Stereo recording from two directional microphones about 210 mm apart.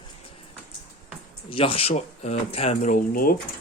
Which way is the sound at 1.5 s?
25° left (ahead or behind).